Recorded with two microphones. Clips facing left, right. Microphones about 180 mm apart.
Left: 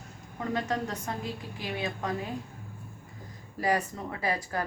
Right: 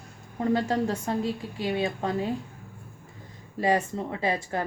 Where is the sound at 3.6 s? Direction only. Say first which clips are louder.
Right 4 dB; 25° right (ahead or behind).